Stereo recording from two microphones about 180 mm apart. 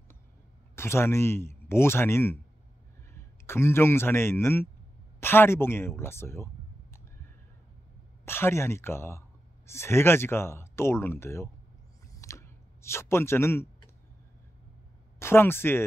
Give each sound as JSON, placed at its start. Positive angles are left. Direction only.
{"t": 0.7, "sound": "speech", "side_deg": 15}
{"t": 3.4, "sound": "speech", "side_deg": 15}
{"t": 8.3, "sound": "speech", "side_deg": 15}
{"t": 12.1, "sound": "clicking", "side_deg": 15}
{"t": 15.1, "sound": "speech", "side_deg": 15}